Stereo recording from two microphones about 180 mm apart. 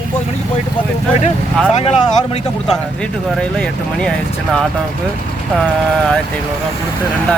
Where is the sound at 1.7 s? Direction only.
35° left (ahead or behind).